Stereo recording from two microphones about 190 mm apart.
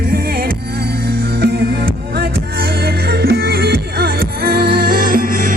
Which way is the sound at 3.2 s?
55° right (ahead or behind).